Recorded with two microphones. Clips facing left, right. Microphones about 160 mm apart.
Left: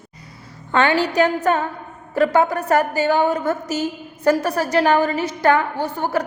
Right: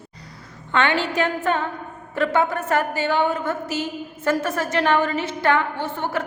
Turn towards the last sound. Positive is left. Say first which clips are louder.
# left 4 dB
turn(degrees=40)  # may be behind; listen again after turning